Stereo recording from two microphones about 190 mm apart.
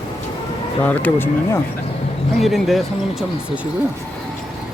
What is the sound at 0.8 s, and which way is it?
Speech, 10° left (ahead or behind).